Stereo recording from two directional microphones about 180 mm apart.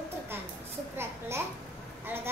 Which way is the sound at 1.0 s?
15° right (ahead or behind).